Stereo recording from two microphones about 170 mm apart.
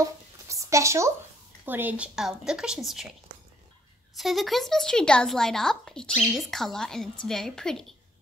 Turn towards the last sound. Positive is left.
turn(degrees=5)  # may be behind; listen again after turning